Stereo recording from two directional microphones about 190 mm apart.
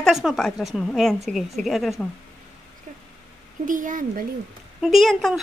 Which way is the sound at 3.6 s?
45° right (ahead or behind).